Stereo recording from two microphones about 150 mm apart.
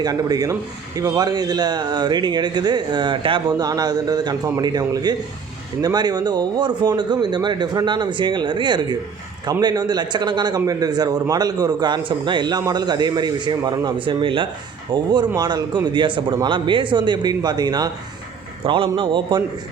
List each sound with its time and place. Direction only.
0.0 s a man's voice: 25° right (ahead or behind)